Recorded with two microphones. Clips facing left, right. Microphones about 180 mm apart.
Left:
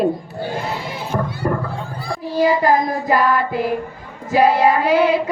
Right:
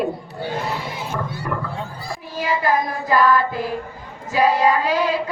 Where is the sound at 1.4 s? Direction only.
40° left (ahead or behind).